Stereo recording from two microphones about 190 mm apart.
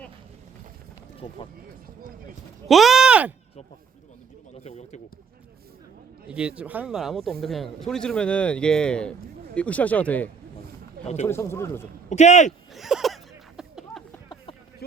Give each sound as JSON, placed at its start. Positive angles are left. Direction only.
{"t": 1.2, "sound": "speech", "side_deg": 25}
{"t": 2.6, "sound": "speech", "side_deg": 0}
{"t": 4.5, "sound": "speech", "side_deg": 35}
{"t": 6.2, "sound": "speech", "side_deg": -5}
{"t": 11.0, "sound": "speech", "side_deg": 35}
{"t": 11.3, "sound": "speech", "side_deg": 15}
{"t": 12.0, "sound": "speech", "side_deg": 35}
{"t": 12.7, "sound": "a sound", "side_deg": 0}
{"t": 14.8, "sound": "a sound", "side_deg": 55}